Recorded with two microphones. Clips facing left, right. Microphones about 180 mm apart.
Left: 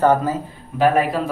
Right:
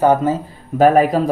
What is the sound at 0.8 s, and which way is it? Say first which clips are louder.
Speech: right 5 dB; 40° right (ahead or behind).